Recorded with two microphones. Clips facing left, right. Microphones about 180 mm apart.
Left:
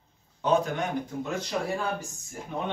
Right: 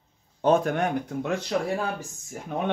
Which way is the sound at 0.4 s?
50° right (ahead or behind).